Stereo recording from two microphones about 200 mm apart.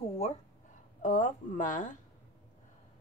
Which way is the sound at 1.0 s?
40° left (ahead or behind).